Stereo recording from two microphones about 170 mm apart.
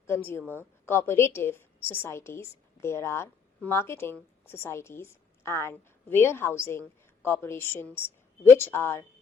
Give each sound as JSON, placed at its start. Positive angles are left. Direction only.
{"t": 0.1, "sound": "a woman's voice", "side_deg": 15}